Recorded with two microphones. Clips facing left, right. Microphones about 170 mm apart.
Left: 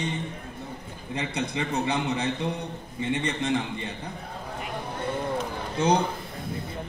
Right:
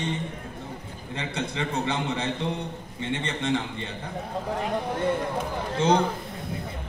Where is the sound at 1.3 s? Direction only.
15° left (ahead or behind).